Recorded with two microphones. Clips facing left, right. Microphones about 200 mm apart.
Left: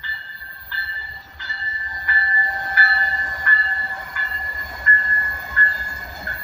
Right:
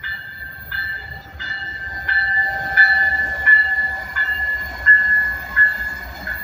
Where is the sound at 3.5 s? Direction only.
15° right (ahead or behind).